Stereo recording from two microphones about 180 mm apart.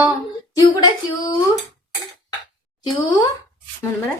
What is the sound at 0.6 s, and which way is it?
Speech, 20° left (ahead or behind).